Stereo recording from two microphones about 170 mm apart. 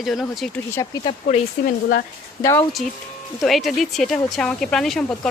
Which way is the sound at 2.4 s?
20° left (ahead or behind).